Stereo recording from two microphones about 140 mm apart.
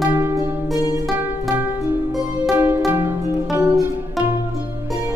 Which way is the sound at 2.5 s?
15° right (ahead or behind).